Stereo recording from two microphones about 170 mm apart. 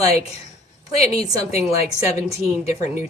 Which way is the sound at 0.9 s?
40° left (ahead or behind).